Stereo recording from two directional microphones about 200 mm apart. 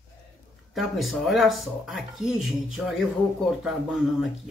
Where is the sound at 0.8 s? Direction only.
Centre (ahead or behind).